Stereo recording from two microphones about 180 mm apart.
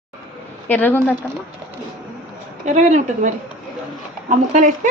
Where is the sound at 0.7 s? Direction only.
10° left (ahead or behind).